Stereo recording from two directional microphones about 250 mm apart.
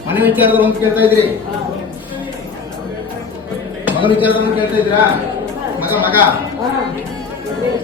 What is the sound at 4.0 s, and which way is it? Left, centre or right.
Speech, centre.